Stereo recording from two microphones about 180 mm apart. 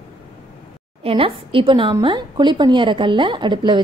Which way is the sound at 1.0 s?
30° right (ahead or behind).